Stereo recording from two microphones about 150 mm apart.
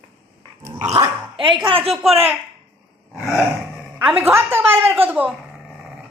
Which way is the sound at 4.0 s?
15° right (ahead or behind).